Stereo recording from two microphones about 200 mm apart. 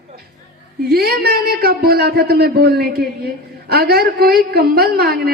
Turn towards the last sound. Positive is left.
turn(degrees=-50)  # may be behind; listen again after turning